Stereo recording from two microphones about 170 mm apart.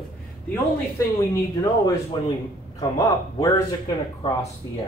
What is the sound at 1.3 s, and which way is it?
Speech, 20° left (ahead or behind).